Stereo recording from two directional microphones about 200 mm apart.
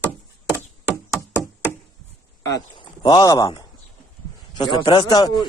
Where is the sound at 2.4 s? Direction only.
20° left (ahead or behind).